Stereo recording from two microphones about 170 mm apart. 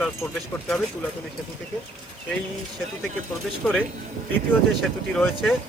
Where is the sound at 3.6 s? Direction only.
5° left (ahead or behind).